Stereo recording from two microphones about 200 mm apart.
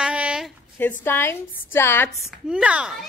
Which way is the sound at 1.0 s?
10° left (ahead or behind).